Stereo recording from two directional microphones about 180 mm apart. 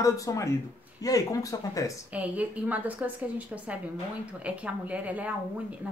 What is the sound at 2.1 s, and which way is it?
A woman's voice, 10° right (ahead or behind).